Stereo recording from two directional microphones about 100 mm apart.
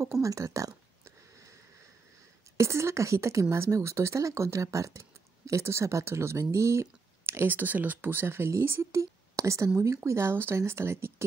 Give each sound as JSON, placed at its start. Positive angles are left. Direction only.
{"t": 0.0, "sound": "a woman's voice", "side_deg": -30}
{"t": 2.5, "sound": "a woman's voice", "side_deg": -30}